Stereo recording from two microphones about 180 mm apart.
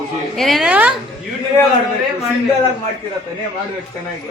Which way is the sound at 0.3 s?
Centre (ahead or behind).